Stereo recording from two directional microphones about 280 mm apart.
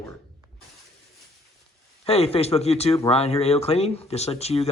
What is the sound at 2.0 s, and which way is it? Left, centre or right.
Speech, left.